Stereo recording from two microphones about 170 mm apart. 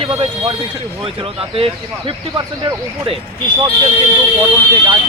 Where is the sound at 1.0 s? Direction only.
35° right (ahead or behind).